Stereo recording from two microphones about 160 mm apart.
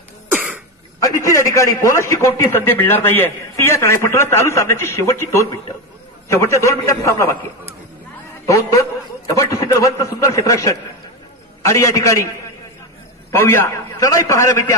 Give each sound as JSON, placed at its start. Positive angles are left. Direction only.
{"t": 0.3, "sound": "throat clearing", "side_deg": -10}
{"t": 1.0, "sound": "a man's voice", "side_deg": 20}
{"t": 8.5, "sound": "a man's voice", "side_deg": 20}
{"t": 13.3, "sound": "a man's voice", "side_deg": 15}